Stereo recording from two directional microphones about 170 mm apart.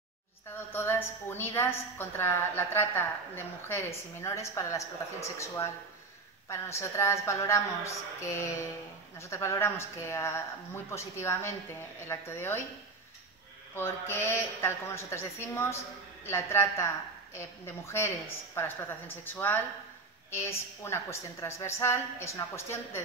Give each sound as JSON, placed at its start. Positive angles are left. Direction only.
{"t": 0.7, "sound": "a woman's voice", "side_deg": 15}
{"t": 13.7, "sound": "a woman's voice", "side_deg": 15}